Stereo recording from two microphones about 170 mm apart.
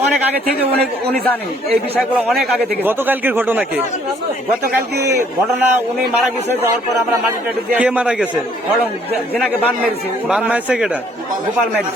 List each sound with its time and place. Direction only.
2.1 s a man's voice: centre (ahead or behind)
4.7 s a man's voice: 15° right (ahead or behind)
7.7 s a man's voice: 10° right (ahead or behind)
10.2 s a man's voice: 5° right (ahead or behind)